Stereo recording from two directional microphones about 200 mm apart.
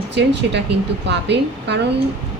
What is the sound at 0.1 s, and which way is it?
Speech, 60° right (ahead or behind).